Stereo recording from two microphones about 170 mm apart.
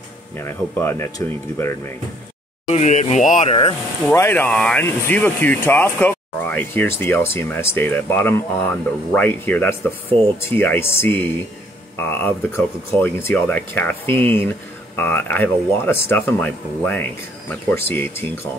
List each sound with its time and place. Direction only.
0.4 s speech: 15° left (ahead or behind)
2.7 s speech: 45° left (ahead or behind)
4.1 s speech: 15° left (ahead or behind)